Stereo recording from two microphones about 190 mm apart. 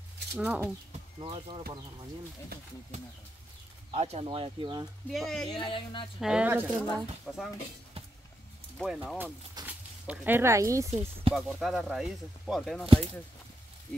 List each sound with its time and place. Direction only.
0.4 s speech: 10° right (ahead or behind)
1.2 s speech: 25° right (ahead or behind)
3.9 s speech: 30° right (ahead or behind)
5.1 s speech: centre (ahead or behind)
5.6 s speech: 25° left (ahead or behind)
6.1 s speech: 5° right (ahead or behind)
8.7 s speech: 5° right (ahead or behind)
11.3 s speech: centre (ahead or behind)
12.8 s speech: 30° right (ahead or behind)